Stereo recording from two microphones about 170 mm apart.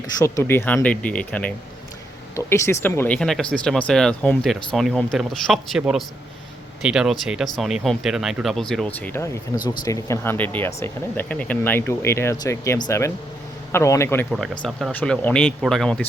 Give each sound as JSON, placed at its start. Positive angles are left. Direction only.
{"t": 0.2, "sound": "speech", "side_deg": 15}
{"t": 3.2, "sound": "speech", "side_deg": 0}
{"t": 9.1, "sound": "speech", "side_deg": 15}
{"t": 14.3, "sound": "speech", "side_deg": 0}